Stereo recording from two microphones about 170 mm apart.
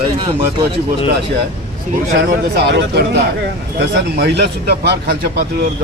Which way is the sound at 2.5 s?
70° right (ahead or behind).